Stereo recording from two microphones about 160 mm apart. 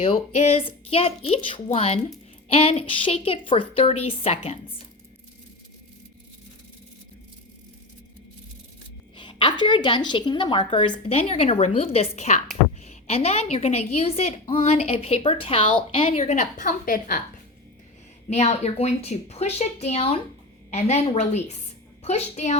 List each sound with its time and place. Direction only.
0.0 s a woman's voice: 40° left (ahead or behind)
9.1 s a woman's voice: 30° left (ahead or behind); by 17.2 s 60° left (ahead or behind)
18.3 s a woman's voice: 45° left (ahead or behind)